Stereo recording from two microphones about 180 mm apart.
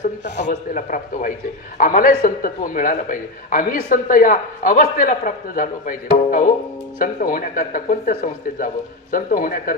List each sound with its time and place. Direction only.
0.7 s a man's voice: 45° left (ahead or behind)